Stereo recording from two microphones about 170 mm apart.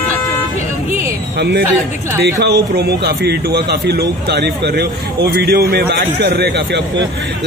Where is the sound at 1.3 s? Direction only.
80° right.